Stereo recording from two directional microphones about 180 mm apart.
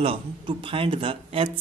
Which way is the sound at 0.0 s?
30° right (ahead or behind).